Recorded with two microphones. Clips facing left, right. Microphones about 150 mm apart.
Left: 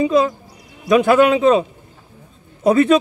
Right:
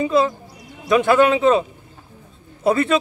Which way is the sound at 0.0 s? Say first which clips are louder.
Left 2 dB; 15° left (ahead or behind).